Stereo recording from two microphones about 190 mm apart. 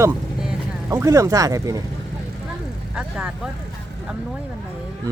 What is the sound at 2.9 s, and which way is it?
Speech, 5° right (ahead or behind).